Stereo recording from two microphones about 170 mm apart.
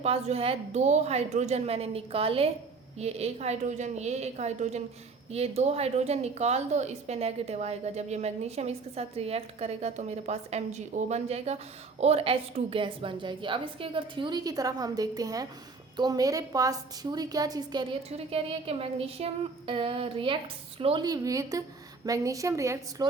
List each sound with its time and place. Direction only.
0.0 s a woman's voice: 35° right (ahead or behind)
18.3 s a woman's voice: 35° right (ahead or behind); by 23.0 s 20° right (ahead or behind)